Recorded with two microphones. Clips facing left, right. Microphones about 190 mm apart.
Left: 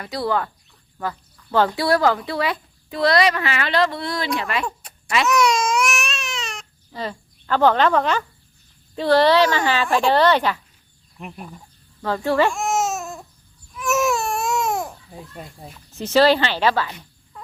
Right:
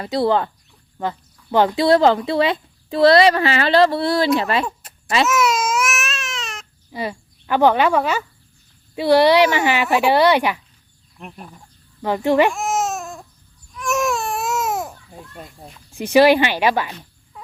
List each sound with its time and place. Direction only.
0.0 s speech: 25° right (ahead or behind)
4.6 s a sound: 5° right (ahead or behind)
5.2 s baby cry: 5° right (ahead or behind)
6.9 s speech: 10° right (ahead or behind)
11.2 s speech: centre (ahead or behind)
12.0 s speech: 15° right (ahead or behind)
12.5 s babbling: centre (ahead or behind)
13.7 s baby cry: centre (ahead or behind)
15.9 s speech: 15° right (ahead or behind)
17.3 s frog: 5° right (ahead or behind)